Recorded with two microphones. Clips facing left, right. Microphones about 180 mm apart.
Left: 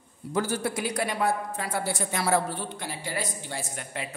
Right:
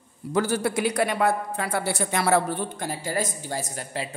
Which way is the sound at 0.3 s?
75° right (ahead or behind).